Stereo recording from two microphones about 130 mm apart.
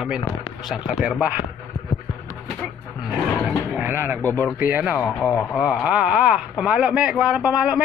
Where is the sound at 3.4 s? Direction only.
10° right (ahead or behind).